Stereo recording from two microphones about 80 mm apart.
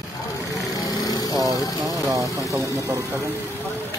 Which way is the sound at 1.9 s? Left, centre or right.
Right.